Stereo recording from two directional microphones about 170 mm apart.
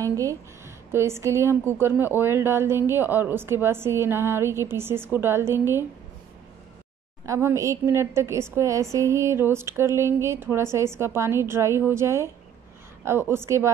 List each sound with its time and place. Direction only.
0.0 s a woman's voice: 20° right (ahead or behind)
7.2 s a woman's voice: 15° right (ahead or behind)